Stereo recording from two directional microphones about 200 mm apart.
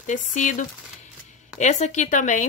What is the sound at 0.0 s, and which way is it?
Speech, 40° left (ahead or behind).